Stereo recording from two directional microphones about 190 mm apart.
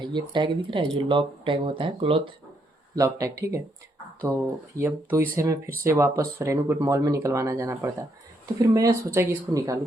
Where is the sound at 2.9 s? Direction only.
15° right (ahead or behind).